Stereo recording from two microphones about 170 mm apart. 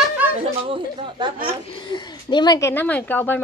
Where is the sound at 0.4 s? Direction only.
30° right (ahead or behind).